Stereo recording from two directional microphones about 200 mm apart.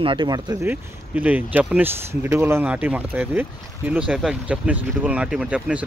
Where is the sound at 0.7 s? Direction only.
10° right (ahead or behind).